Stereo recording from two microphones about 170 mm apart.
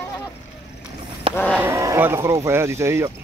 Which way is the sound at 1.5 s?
15° right (ahead or behind).